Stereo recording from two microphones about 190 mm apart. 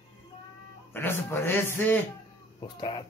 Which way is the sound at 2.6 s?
25° left (ahead or behind).